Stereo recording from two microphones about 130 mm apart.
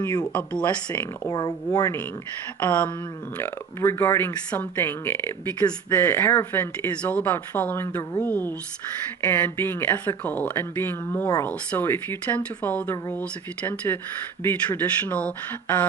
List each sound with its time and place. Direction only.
0.0 s speech: 25° left (ahead or behind)
0.3 s speech: 10° left (ahead or behind)
1.2 s speech: 30° left (ahead or behind)
2.6 s speech: 15° left (ahead or behind)